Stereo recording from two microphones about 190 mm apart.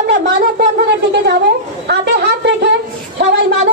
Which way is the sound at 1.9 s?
60° right (ahead or behind).